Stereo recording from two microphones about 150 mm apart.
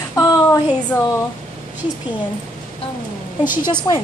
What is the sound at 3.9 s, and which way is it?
Speech, 20° left (ahead or behind).